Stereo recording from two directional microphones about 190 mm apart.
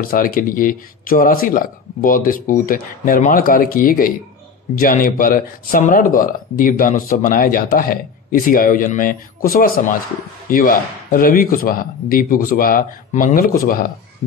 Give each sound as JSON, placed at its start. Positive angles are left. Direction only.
{"t": 0.0, "sound": "speech", "side_deg": 50}